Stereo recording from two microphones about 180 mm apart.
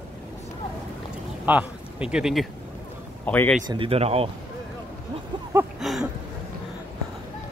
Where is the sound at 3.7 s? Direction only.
30° right (ahead or behind).